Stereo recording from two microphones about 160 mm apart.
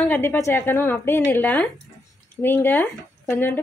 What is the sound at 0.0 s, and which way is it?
A woman's voice, 15° left (ahead or behind).